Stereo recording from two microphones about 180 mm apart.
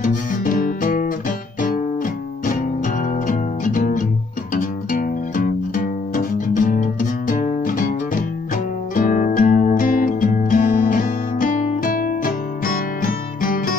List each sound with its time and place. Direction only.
0.0 s music: 50° left (ahead or behind)
3.3 s music: 50° left (ahead or behind)